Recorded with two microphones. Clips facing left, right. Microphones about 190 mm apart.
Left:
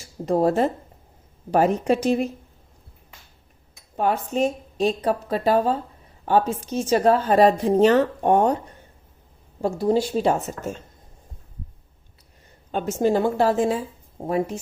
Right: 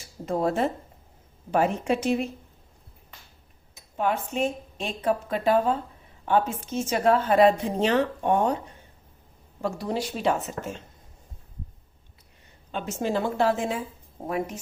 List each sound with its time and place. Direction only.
0.3 s speech: 35° left (ahead or behind)
3.9 s speech: 40° left (ahead or behind)
9.6 s speech: 30° left (ahead or behind)
12.7 s a woman's voice: 45° left (ahead or behind)